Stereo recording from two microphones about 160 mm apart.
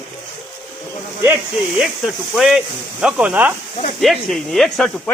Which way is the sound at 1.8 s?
5° right (ahead or behind).